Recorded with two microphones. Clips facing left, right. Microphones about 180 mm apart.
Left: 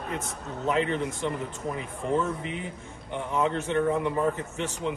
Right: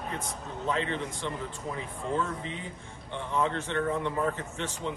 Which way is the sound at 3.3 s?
15° left (ahead or behind).